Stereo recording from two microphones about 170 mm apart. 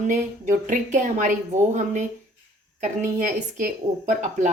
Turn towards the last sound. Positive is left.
turn(degrees=-50)  # may be behind; listen again after turning